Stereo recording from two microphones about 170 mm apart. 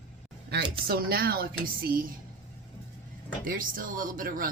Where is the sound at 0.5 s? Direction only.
65° right (ahead or behind).